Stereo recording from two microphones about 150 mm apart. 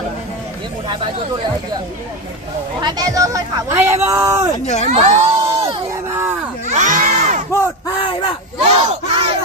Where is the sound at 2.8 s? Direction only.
25° right (ahead or behind).